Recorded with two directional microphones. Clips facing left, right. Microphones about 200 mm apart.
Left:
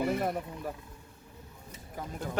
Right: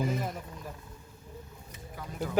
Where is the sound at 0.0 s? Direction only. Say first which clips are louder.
Left 3 dB; 65° left (ahead or behind).